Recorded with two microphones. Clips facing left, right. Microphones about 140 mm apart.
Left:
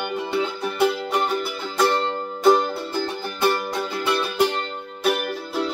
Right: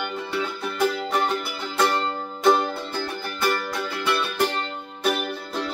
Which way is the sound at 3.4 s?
20° left (ahead or behind).